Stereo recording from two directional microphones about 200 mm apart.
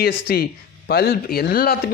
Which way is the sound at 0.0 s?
50° left (ahead or behind).